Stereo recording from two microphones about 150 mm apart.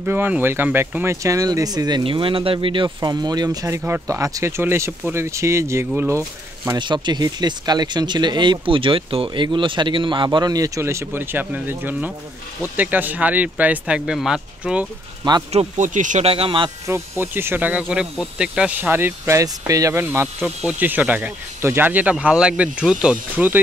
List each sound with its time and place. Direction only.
0.0 s speech: 15° right (ahead or behind)
6.8 s speech: 30° right (ahead or behind); by 14.9 s 5° right (ahead or behind)
15.5 s speech: 55° right (ahead or behind)
16.3 s speech: 40° right (ahead or behind)
16.8 s speech: 15° right (ahead or behind)
20.3 s speech: 5° right (ahead or behind)